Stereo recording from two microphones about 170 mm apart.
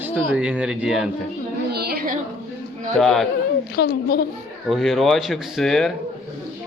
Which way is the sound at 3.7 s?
65° left (ahead or behind).